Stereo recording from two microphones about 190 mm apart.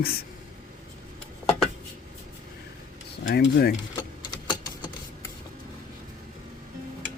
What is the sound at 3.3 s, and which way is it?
Speech, 55° left (ahead or behind).